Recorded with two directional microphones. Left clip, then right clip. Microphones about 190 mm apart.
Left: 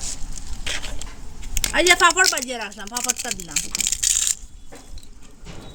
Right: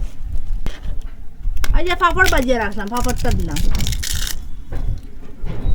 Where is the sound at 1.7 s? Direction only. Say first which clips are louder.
Left 2 dB; 30° left (ahead or behind).